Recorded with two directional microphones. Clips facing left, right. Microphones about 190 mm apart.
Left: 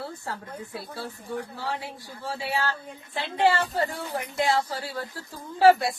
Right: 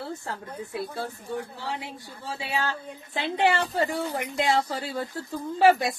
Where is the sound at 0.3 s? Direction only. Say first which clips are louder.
Right 1 dB; 20° right (ahead or behind).